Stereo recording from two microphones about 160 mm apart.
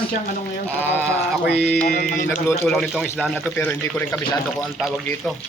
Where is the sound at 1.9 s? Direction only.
65° left (ahead or behind).